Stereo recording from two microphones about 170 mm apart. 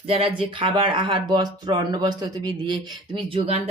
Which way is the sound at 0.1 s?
30° right (ahead or behind).